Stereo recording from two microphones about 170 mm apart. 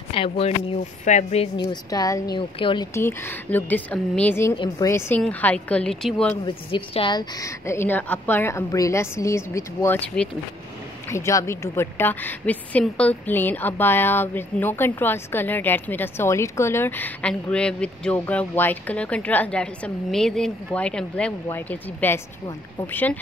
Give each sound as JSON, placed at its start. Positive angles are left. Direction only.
{"t": 0.1, "sound": "a woman's voice", "side_deg": 30}
{"t": 1.6, "sound": "a woman's voice", "side_deg": 25}
{"t": 2.9, "sound": "a woman's voice", "side_deg": 15}
{"t": 6.4, "sound": "a woman's voice", "side_deg": 30}